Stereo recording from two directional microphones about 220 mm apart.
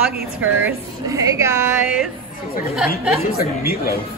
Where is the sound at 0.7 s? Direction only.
15° right (ahead or behind).